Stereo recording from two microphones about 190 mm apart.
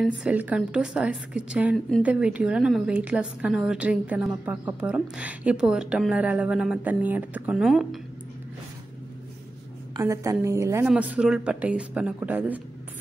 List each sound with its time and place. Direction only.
0.0 s a woman's voice: 5° right (ahead or behind)
9.9 s speech: 15° right (ahead or behind)